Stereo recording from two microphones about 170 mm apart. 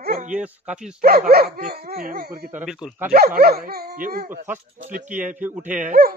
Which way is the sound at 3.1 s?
60° right (ahead or behind).